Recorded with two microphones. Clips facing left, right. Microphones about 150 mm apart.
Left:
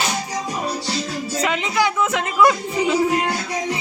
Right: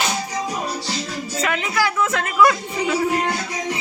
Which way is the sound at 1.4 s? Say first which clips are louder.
Left 1 dB; 20° left (ahead or behind).